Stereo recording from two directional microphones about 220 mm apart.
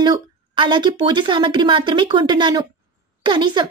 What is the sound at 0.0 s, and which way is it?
A child's voice, 20° right (ahead or behind).